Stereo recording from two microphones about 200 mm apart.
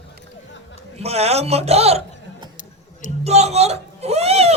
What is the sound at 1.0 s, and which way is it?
Speech, 30° right (ahead or behind).